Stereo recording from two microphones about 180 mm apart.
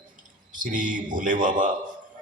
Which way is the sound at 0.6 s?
45° right (ahead or behind).